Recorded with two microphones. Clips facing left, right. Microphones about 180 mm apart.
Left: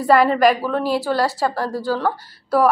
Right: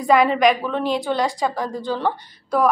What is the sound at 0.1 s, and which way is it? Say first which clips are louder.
A woman's voice: left 1 dB; 5° left (ahead or behind).